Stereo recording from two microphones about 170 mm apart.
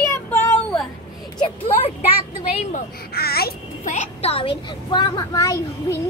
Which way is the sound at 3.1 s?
65° left (ahead or behind).